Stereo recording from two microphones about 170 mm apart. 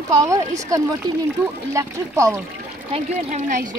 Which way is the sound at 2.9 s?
45° right (ahead or behind).